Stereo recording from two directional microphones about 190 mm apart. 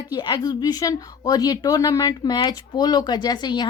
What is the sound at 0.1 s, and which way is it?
Speech, 25° left (ahead or behind).